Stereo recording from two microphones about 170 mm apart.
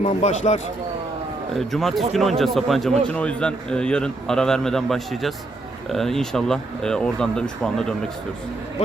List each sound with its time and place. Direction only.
0.0 s speech: 40° left (ahead or behind)
1.5 s a man's voice: centre (ahead or behind)